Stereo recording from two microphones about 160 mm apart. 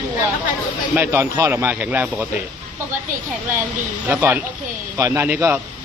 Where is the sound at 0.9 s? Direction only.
15° right (ahead or behind).